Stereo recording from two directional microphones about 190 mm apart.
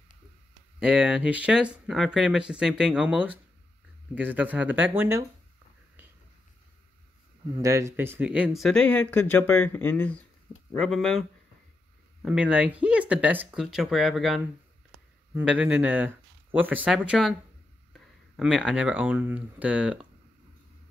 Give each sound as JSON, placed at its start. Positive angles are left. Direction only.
{"t": 0.7, "sound": "speech", "side_deg": -5}
{"t": 7.5, "sound": "speech", "side_deg": -15}
{"t": 8.6, "sound": "speech", "side_deg": 5}